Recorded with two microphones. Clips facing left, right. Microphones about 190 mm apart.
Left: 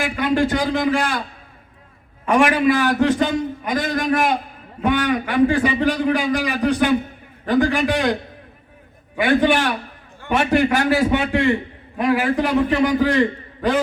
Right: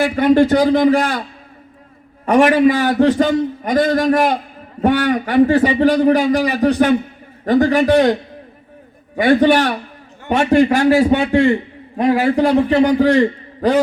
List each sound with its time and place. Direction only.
0.0 s a man's voice: 40° right (ahead or behind)
2.2 s a man's voice: 40° right (ahead or behind)
9.1 s a man's voice: 40° right (ahead or behind)